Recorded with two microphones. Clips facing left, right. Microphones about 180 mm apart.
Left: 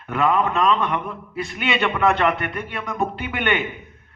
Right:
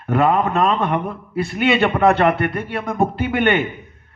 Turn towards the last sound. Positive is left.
turn(degrees=-40)  # may be behind; listen again after turning